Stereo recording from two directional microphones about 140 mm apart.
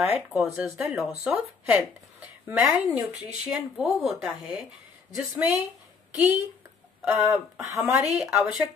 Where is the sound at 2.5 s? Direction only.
5° right (ahead or behind).